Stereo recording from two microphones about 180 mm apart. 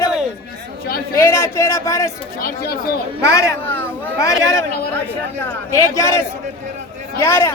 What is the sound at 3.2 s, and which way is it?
Speech, 15° left (ahead or behind).